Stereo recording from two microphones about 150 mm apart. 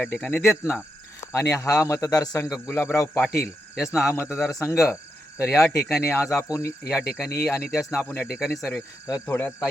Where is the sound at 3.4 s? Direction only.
5° right (ahead or behind).